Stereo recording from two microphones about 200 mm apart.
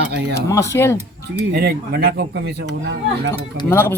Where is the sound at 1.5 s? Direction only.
55° right (ahead or behind).